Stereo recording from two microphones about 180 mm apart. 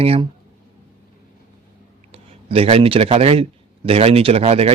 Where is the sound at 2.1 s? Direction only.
30° right (ahead or behind).